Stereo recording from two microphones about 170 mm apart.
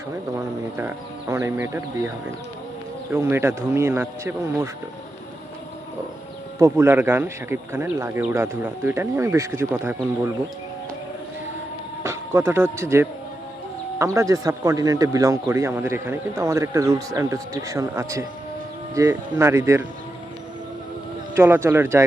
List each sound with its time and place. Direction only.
0.3 s speech: 15° right (ahead or behind)
6.6 s speech: 15° right (ahead or behind)
12.0 s speech: 15° right (ahead or behind)
21.3 s speech: 15° right (ahead or behind)